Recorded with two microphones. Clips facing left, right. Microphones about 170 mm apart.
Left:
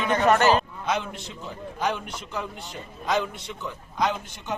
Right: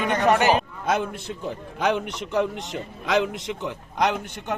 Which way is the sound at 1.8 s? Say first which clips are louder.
Right 5 dB; 70° right (ahead or behind).